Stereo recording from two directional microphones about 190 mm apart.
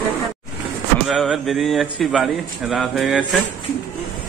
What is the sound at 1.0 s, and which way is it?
A man's voice, centre (ahead or behind).